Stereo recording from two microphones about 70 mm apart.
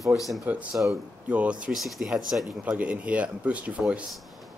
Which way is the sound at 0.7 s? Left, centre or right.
Centre.